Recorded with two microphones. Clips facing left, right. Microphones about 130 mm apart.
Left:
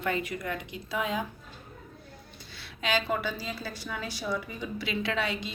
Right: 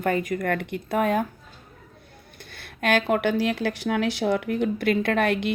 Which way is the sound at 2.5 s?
55° right (ahead or behind).